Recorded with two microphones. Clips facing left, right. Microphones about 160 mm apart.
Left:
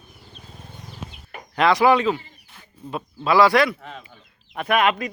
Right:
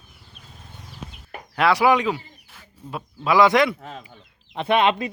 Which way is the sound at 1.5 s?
10° right (ahead or behind).